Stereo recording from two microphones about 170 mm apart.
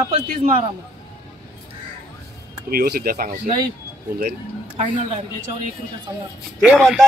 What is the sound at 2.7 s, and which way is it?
Speech, 65° right (ahead or behind).